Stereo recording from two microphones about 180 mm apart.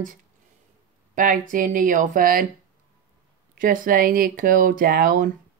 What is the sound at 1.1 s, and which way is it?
Speech, 50° right (ahead or behind).